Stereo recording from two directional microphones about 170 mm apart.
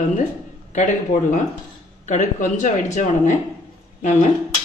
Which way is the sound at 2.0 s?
45° left (ahead or behind).